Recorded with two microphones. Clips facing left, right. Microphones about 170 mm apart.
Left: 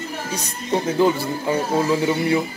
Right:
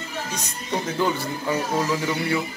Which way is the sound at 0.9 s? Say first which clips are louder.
Left 6 dB; 25° left (ahead or behind).